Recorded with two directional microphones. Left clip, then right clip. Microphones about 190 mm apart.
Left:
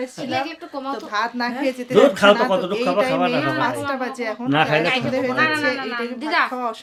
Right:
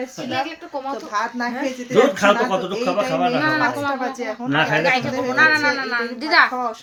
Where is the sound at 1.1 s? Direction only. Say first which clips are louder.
Left 1 dB; 10° left (ahead or behind).